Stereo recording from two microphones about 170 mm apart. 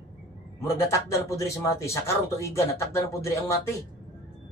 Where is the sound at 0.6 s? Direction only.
15° left (ahead or behind).